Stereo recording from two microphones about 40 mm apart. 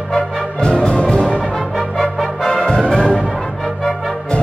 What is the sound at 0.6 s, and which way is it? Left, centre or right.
Music, left.